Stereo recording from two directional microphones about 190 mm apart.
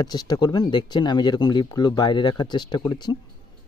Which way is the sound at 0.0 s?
20° left (ahead or behind).